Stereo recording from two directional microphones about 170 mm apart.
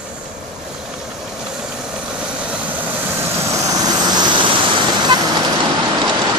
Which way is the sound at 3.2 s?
20° right (ahead or behind).